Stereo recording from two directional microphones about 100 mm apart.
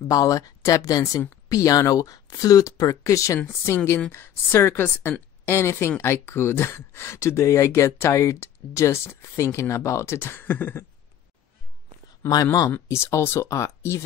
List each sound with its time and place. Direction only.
0.1 s speech: 40° left (ahead or behind); by 10.9 s 20° left (ahead or behind)
12.8 s speech: 30° left (ahead or behind)